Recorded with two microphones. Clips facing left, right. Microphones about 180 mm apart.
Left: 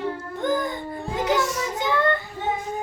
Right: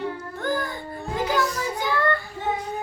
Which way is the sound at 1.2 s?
75° left (ahead or behind).